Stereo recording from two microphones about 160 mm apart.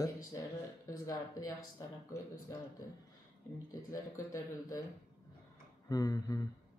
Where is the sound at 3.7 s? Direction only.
20° left (ahead or behind).